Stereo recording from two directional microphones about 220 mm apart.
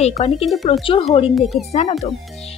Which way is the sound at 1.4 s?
Centre (ahead or behind).